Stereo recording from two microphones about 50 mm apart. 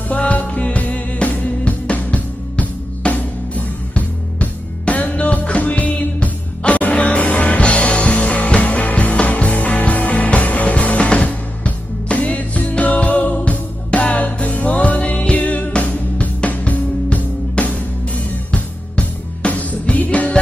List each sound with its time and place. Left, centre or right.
0.1 s music: left